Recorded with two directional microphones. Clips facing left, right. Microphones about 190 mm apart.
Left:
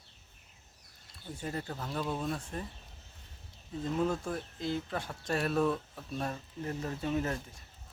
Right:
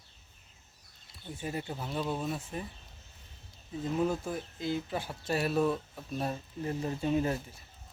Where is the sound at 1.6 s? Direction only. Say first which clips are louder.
Right 1 dB; 10° right (ahead or behind).